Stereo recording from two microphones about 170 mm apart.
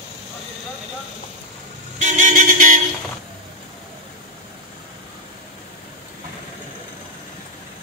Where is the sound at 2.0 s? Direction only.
45° right (ahead or behind).